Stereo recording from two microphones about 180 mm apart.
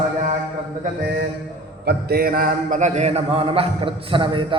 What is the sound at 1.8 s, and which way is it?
A man's voice, 60° right (ahead or behind).